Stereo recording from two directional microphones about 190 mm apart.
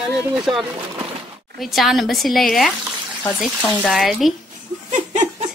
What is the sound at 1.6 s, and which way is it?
A woman's voice, centre (ahead or behind).